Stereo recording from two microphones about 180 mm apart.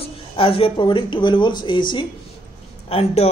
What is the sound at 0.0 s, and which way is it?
A man's voice, 30° left (ahead or behind).